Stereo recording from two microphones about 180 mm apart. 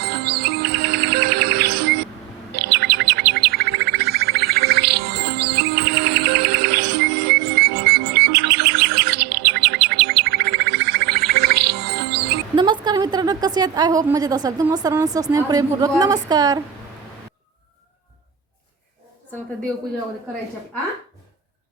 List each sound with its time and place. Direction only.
0.0 s music: 60° right (ahead or behind)
2.6 s chirp: 65° right (ahead or behind)
7.9 s bird: 65° right (ahead or behind)
12.5 s a woman's voice: 25° right (ahead or behind)